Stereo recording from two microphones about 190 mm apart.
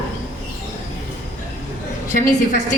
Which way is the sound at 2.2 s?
40° left (ahead or behind).